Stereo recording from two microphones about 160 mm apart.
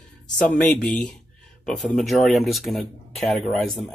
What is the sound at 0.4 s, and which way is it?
Speech, 5° left (ahead or behind).